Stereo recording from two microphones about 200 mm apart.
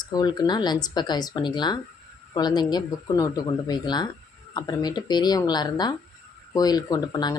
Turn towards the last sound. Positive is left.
turn(degrees=20)  # may be behind; listen again after turning